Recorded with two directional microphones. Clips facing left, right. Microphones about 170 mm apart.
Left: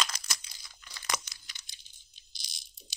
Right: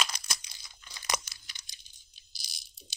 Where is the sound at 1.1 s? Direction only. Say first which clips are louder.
Right 2 dB; 20° right (ahead or behind).